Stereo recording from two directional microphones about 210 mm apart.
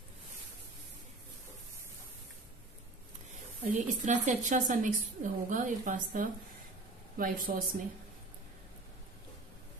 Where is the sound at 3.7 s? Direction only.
35° right (ahead or behind).